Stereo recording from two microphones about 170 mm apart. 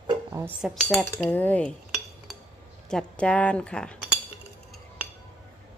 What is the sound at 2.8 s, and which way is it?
Speech, 5° left (ahead or behind).